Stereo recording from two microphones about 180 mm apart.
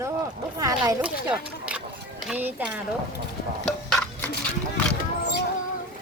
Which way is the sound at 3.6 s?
5° left (ahead or behind).